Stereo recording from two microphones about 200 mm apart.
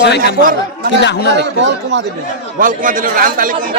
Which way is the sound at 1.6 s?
65° right (ahead or behind).